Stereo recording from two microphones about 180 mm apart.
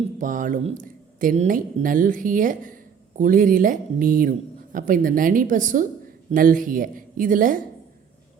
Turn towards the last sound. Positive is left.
turn(degrees=-50)  # may be behind; listen again after turning